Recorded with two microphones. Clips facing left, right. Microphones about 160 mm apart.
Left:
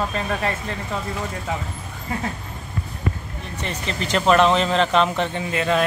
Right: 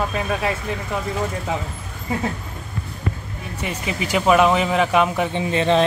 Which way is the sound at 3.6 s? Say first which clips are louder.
Right 2 dB; 10° right (ahead or behind).